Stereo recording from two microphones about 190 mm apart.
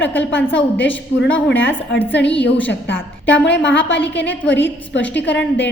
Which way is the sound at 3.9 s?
10° left (ahead or behind).